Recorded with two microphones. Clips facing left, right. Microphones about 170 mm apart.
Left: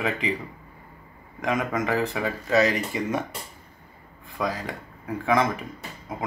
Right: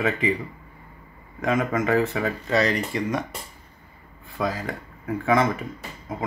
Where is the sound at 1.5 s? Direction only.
Centre (ahead or behind).